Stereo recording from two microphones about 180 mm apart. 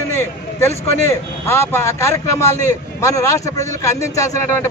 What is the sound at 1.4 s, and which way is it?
A man's voice, 15° left (ahead or behind).